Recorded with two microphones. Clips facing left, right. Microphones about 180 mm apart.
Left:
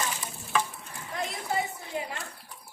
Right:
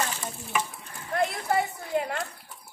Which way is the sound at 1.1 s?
60° right (ahead or behind).